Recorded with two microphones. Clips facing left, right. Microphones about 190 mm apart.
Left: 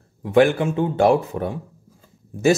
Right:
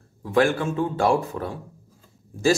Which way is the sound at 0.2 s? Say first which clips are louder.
Left 4 dB; 20° left (ahead or behind).